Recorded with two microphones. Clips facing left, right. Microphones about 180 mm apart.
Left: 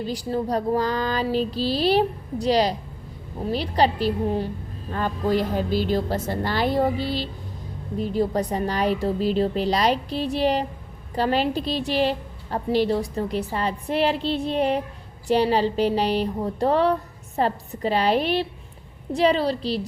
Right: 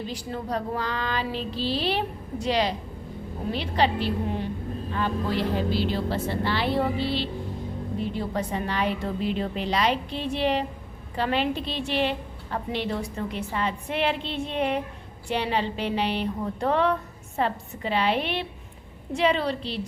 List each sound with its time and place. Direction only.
0.0 s a woman's voice: 35° left (ahead or behind)